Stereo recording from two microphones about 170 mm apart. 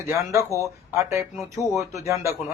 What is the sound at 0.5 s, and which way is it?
A man's voice, 15° right (ahead or behind).